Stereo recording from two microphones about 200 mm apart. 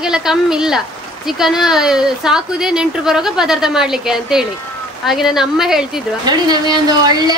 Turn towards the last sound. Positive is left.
turn(degrees=-20)  # may be behind; listen again after turning